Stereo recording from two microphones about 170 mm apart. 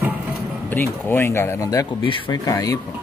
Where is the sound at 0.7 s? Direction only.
10° left (ahead or behind).